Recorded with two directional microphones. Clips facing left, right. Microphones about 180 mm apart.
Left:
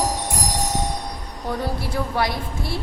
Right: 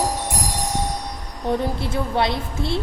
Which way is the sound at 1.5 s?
25° right (ahead or behind).